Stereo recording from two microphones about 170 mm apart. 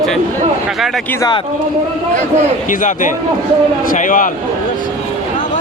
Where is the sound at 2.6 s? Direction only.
50° left (ahead or behind).